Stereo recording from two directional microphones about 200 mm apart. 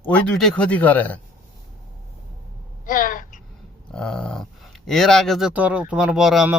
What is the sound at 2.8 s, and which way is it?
Speech, 45° left (ahead or behind).